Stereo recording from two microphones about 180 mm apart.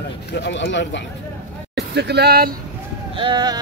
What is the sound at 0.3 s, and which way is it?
Speech, 75° left (ahead or behind).